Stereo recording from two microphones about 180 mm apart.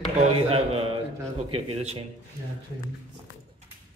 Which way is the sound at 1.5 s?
35° right (ahead or behind).